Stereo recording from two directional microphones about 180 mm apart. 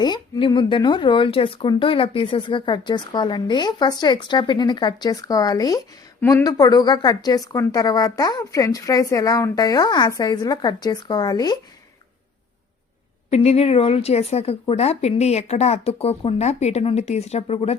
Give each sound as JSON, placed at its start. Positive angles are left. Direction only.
{"t": 0.0, "sound": "speech", "side_deg": 25}
{"t": 13.3, "sound": "speech", "side_deg": 35}